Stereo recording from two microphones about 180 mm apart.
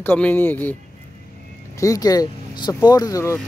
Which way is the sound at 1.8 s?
20° left (ahead or behind).